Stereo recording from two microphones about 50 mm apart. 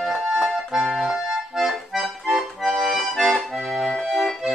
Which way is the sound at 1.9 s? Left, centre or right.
Centre.